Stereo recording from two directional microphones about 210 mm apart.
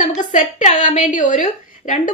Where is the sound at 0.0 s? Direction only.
35° left (ahead or behind).